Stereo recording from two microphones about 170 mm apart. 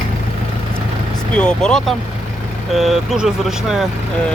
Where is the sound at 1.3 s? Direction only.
5° left (ahead or behind).